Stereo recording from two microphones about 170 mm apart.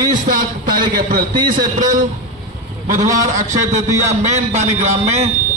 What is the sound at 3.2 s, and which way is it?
A man's voice, 45° right (ahead or behind).